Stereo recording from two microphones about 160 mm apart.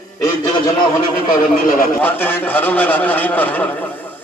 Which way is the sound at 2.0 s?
15° left (ahead or behind).